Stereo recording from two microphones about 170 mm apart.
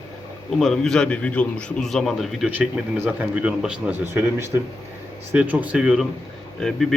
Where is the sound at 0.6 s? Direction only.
5° left (ahead or behind).